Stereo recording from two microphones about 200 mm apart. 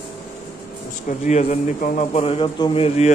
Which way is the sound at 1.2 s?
35° left (ahead or behind).